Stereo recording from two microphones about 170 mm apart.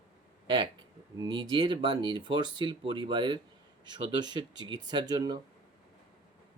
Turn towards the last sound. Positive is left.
turn(degrees=-25)  # may be behind; listen again after turning